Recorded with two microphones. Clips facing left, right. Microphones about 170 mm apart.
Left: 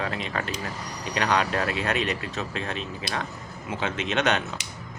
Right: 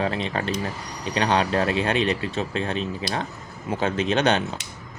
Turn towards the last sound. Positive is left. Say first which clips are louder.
# right 4 dB
turn(degrees=-35)  # may be behind; listen again after turning